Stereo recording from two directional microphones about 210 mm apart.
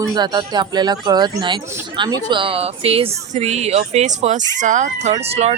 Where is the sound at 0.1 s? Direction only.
20° right (ahead or behind).